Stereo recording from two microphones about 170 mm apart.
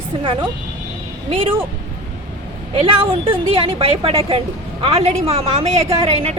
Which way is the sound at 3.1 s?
35° right (ahead or behind).